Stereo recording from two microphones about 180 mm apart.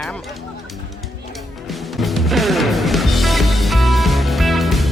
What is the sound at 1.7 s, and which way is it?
Music, centre (ahead or behind).